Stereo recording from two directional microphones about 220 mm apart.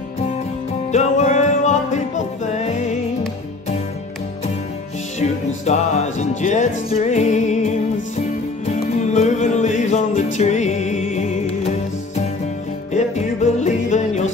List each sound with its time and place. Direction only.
0.9 s music: 30° left (ahead or behind)
5.2 s music: 30° left (ahead or behind)
12.9 s music: 30° left (ahead or behind)